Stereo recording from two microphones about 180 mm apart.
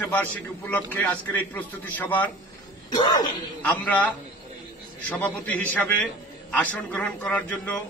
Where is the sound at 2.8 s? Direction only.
25° left (ahead or behind).